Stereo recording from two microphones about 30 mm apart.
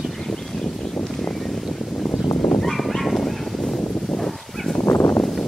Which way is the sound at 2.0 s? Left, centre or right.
Left.